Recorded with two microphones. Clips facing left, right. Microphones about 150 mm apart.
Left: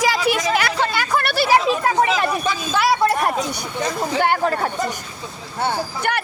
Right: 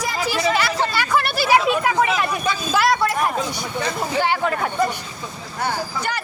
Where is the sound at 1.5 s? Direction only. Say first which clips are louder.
Even; 35° left (ahead or behind).